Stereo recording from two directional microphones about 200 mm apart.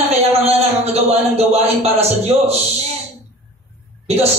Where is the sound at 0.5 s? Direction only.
30° right (ahead or behind).